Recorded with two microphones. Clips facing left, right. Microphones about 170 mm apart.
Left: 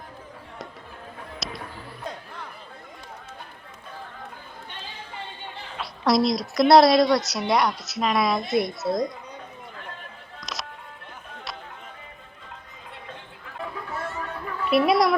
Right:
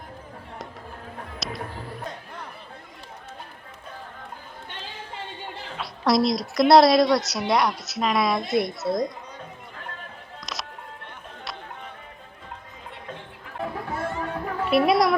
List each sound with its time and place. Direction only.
1.4 s music: centre (ahead or behind)
5.7 s a woman's voice: centre (ahead or behind)
10.4 s music: centre (ahead or behind)
14.1 s music: 35° right (ahead or behind)
14.7 s a woman's voice: centre (ahead or behind)